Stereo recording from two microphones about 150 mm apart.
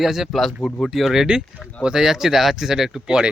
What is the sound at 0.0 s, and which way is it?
Speech, centre (ahead or behind).